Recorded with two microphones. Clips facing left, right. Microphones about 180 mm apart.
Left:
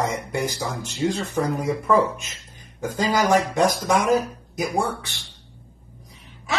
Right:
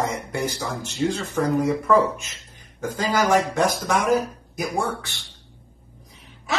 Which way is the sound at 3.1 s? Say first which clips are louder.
Even; 15° left (ahead or behind).